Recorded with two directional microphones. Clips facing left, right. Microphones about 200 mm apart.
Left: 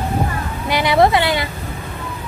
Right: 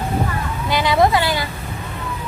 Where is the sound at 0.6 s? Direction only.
20° left (ahead or behind).